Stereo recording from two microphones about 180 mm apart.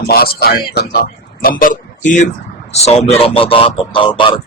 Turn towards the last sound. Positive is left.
turn(degrees=25)  # may be behind; listen again after turning